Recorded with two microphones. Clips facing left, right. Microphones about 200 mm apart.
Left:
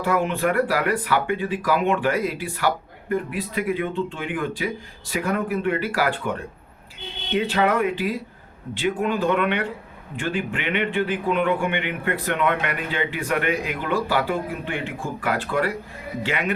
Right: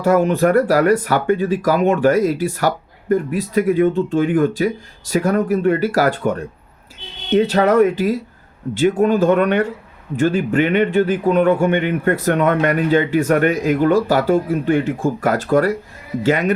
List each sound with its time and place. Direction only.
0.0 s speech: 40° right (ahead or behind)